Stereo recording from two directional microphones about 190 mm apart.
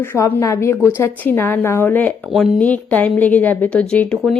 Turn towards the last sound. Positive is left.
turn(degrees=5)  # may be behind; listen again after turning